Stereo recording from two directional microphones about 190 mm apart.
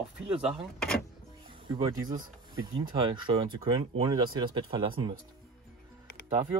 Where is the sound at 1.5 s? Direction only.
25° right (ahead or behind).